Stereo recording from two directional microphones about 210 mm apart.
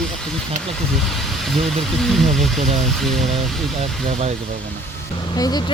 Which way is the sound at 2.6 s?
30° right (ahead or behind).